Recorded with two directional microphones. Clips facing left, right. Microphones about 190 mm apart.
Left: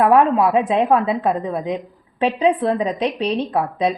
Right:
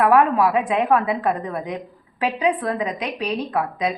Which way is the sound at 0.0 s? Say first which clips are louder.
Left 2 dB; 25° left (ahead or behind).